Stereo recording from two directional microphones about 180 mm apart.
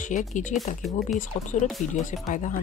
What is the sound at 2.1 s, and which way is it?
Speech, 45° left (ahead or behind).